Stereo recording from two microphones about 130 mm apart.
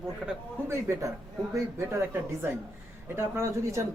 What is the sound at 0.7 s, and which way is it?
Speech, 20° right (ahead or behind).